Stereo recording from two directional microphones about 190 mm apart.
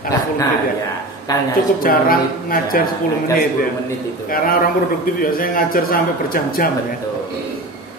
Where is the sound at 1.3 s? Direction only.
20° left (ahead or behind).